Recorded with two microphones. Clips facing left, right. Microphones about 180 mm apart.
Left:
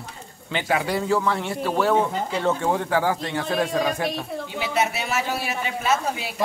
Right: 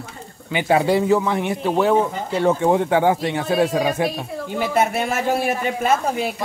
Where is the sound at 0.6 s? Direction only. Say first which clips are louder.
Right 7 dB; 25° right (ahead or behind).